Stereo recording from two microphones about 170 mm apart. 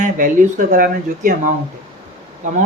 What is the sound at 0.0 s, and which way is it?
Speech, 50° right (ahead or behind).